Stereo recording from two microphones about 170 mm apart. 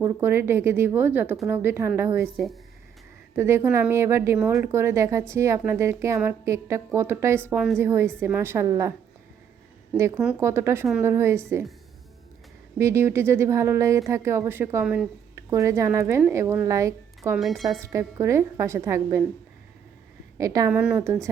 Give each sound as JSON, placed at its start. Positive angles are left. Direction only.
{"t": 0.0, "sound": "speech", "side_deg": -15}
{"t": 3.3, "sound": "speech", "side_deg": -15}
{"t": 7.5, "sound": "speech", "side_deg": -5}
{"t": 7.8, "sound": "speech", "side_deg": -15}
{"t": 10.4, "sound": "speech", "side_deg": -15}
{"t": 12.8, "sound": "speech", "side_deg": -15}
{"t": 17.3, "sound": "speech", "side_deg": 0}
{"t": 17.7, "sound": "speech", "side_deg": -15}
{"t": 20.4, "sound": "a woman's voice", "side_deg": -20}
{"t": 20.7, "sound": "speech", "side_deg": -10}